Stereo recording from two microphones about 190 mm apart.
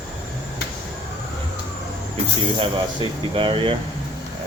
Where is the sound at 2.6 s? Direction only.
25° right (ahead or behind).